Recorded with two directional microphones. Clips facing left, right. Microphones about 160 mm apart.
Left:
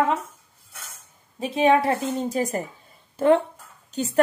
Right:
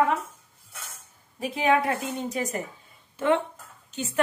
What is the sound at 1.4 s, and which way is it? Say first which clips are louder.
A woman's voice: left 4 dB; 25° left (ahead or behind).